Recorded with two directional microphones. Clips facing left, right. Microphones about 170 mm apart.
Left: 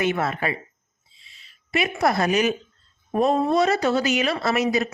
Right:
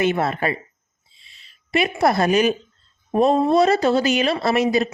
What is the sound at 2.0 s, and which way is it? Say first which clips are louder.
Speech: right 3 dB; 35° right (ahead or behind).